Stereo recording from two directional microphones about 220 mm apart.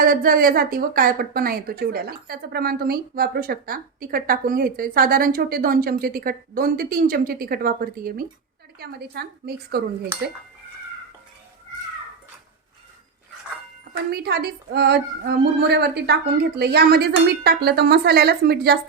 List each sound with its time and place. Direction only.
0.0 s a woman's voice: 40° right (ahead or behind)
14.1 s a woman's voice: 45° right (ahead or behind)